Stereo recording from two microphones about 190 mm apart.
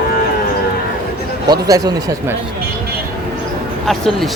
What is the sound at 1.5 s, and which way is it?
Speech, 20° right (ahead or behind).